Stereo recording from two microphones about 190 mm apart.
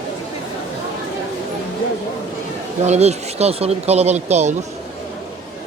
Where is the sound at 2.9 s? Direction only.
35° right (ahead or behind).